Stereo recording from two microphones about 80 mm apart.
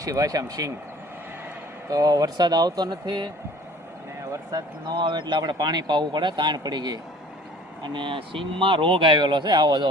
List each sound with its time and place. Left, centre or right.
0.0 s speech: right
1.9 s speech: right
4.3 s speech: right
4.9 s speech: right
7.8 s speech: right